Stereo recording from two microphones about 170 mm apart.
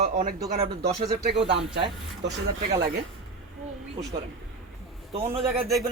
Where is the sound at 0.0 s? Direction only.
45° right (ahead or behind).